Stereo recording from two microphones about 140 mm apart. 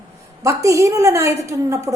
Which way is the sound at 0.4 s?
20° right (ahead or behind).